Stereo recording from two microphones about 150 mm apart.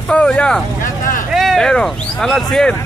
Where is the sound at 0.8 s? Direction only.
60° left (ahead or behind).